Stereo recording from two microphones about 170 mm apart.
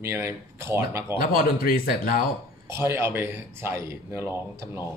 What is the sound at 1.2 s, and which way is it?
Speech, 60° left (ahead or behind).